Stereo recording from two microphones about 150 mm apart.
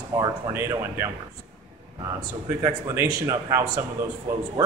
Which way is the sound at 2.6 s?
15° right (ahead or behind).